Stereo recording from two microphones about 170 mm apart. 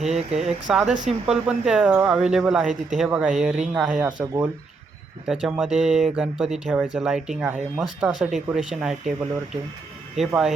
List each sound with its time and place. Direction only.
0.0 s speech: 40° right (ahead or behind)
0.3 s speech: 5° right (ahead or behind)
5.2 s speech: 5° right (ahead or behind)
10.2 s speech: 5° right (ahead or behind)